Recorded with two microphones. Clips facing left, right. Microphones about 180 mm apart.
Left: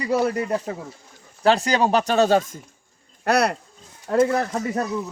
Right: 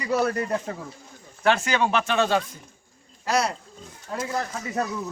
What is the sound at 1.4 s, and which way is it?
Speech, 35° left (ahead or behind).